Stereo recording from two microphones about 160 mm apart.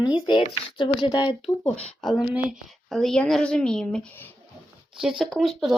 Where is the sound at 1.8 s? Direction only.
Centre (ahead or behind).